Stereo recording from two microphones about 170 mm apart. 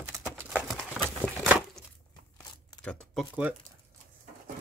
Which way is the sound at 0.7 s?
5° left (ahead or behind).